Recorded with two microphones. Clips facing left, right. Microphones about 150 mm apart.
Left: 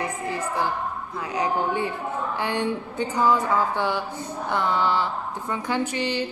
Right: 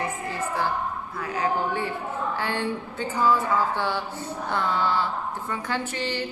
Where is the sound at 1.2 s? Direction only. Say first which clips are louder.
Left 1 dB; 20° left (ahead or behind).